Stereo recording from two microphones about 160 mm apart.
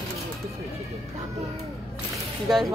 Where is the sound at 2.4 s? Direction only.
Centre (ahead or behind).